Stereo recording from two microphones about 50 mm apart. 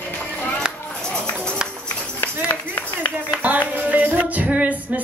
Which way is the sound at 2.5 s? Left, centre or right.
Left.